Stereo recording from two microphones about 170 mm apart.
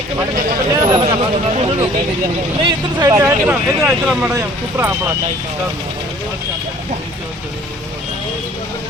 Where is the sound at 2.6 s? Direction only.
20° right (ahead or behind).